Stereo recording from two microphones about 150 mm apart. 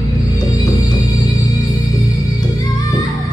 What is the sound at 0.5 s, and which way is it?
Music, 25° left (ahead or behind).